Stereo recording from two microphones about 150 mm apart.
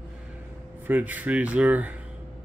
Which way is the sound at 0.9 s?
10° right (ahead or behind).